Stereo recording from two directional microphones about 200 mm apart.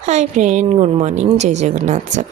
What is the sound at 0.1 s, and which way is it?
A woman's voice, 35° right (ahead or behind).